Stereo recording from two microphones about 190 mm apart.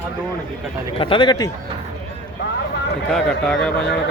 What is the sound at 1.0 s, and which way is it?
Speech, 25° left (ahead or behind).